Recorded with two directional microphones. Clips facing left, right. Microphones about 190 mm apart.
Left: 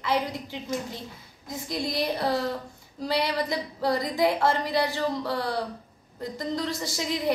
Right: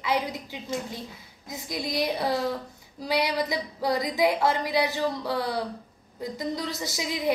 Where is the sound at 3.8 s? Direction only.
5° right (ahead or behind).